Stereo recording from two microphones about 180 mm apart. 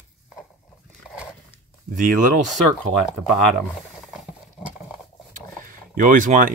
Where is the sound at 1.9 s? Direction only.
45° right (ahead or behind).